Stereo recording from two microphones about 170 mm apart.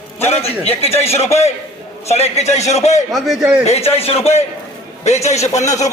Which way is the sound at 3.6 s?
40° left (ahead or behind).